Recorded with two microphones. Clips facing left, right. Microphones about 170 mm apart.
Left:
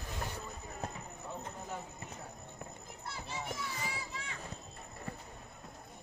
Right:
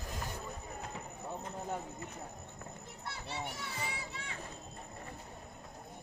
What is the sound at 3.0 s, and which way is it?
Children playing, 65° right (ahead or behind).